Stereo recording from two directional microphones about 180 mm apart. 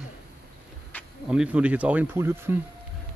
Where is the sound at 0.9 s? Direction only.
10° left (ahead or behind).